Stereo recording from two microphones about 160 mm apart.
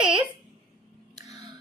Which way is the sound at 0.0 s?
5° right (ahead or behind).